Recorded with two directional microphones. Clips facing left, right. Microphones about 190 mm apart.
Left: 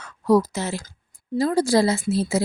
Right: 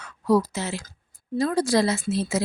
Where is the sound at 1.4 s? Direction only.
25° left (ahead or behind).